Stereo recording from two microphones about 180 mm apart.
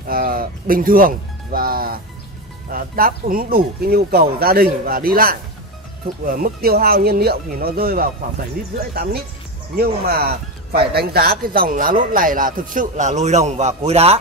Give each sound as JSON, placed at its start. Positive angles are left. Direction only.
{"t": 0.1, "sound": "speech", "side_deg": -55}
{"t": 9.8, "sound": "speech", "side_deg": -60}